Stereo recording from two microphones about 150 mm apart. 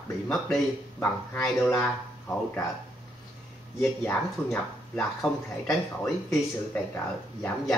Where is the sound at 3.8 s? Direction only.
15° left (ahead or behind).